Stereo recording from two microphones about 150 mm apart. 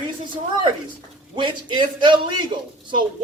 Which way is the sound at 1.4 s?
30° right (ahead or behind).